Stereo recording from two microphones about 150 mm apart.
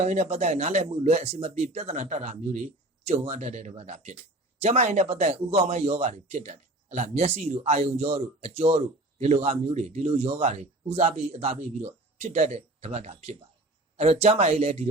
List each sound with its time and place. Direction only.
0.0 s speech: 50° right (ahead or behind)